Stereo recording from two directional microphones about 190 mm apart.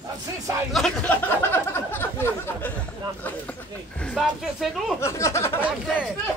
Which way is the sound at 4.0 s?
5° left (ahead or behind).